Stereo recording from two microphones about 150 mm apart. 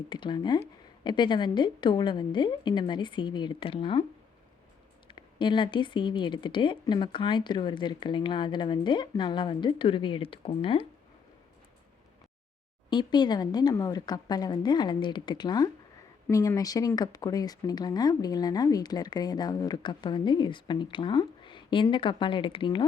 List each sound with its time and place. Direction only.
0.1 s speech: 30° left (ahead or behind)
5.0 s speech: 30° left (ahead or behind)
12.9 s speech: 30° left (ahead or behind)
16.2 s speech: 15° left (ahead or behind)